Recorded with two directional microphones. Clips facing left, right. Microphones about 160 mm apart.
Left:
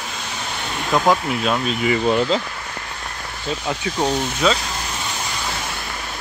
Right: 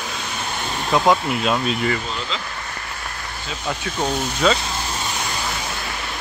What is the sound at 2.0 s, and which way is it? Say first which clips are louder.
Speech: left 11 dB; 55° left (ahead or behind).